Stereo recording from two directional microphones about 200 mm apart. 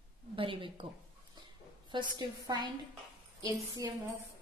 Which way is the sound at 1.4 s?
20° right (ahead or behind).